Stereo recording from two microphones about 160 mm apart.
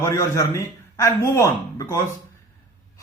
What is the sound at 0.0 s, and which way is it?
A man's voice, 20° left (ahead or behind).